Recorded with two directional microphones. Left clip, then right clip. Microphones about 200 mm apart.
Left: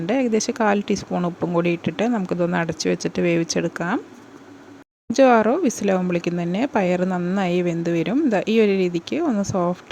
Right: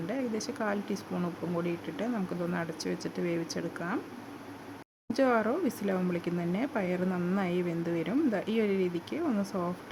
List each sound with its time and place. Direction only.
0.1 s speech: 40° left (ahead or behind)
5.1 s speech: 35° left (ahead or behind)